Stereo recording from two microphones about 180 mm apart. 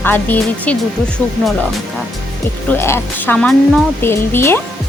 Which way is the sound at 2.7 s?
10° left (ahead or behind).